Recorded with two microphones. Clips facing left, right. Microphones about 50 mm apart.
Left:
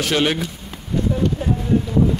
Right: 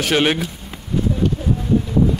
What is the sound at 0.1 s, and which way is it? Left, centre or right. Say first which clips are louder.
Speech: right 3 dB; right.